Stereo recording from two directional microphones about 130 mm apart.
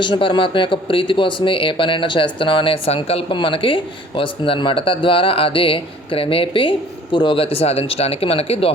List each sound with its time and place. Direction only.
0.0 s speech: 40° left (ahead or behind)